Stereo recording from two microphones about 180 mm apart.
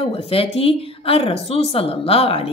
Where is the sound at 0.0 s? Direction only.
30° left (ahead or behind).